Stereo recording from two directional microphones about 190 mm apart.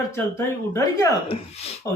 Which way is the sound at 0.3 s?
15° left (ahead or behind).